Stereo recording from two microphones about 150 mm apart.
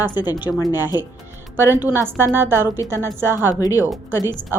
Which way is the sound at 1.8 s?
15° right (ahead or behind).